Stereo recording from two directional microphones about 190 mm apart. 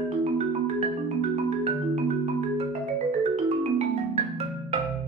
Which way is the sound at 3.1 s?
35° right (ahead or behind).